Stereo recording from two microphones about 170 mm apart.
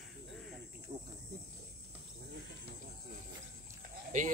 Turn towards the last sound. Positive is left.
turn(degrees=-50)  # may be behind; listen again after turning